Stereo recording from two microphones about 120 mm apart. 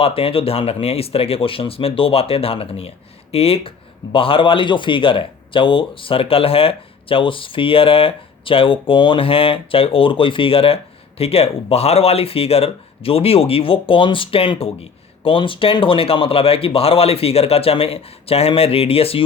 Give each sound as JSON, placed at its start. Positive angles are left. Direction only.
{"t": 0.0, "sound": "speech", "side_deg": 50}